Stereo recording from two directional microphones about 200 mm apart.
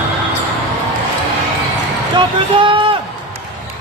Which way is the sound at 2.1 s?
25° right (ahead or behind).